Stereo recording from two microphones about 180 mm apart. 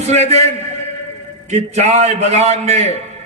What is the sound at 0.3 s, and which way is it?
Speech, 35° right (ahead or behind).